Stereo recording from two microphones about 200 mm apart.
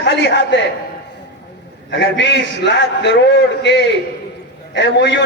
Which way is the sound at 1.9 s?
60° left (ahead or behind).